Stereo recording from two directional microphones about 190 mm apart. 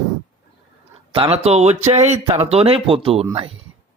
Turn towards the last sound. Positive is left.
turn(degrees=-30)  # may be behind; listen again after turning